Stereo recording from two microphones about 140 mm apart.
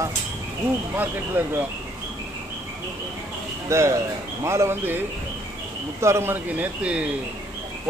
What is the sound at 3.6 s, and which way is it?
Speech, 20° right (ahead or behind).